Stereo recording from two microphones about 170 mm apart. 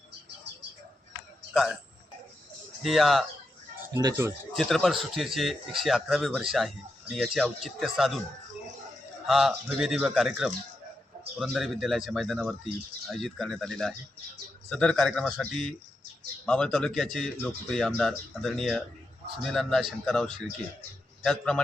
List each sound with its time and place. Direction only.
2.8 s a man's voice: centre (ahead or behind)
4.5 s a man's voice: centre (ahead or behind)
9.2 s a man's voice: centre (ahead or behind)